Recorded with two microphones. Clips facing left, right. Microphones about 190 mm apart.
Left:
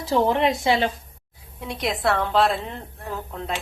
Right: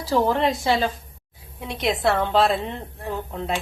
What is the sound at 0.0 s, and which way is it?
Speech, 20° left (ahead or behind).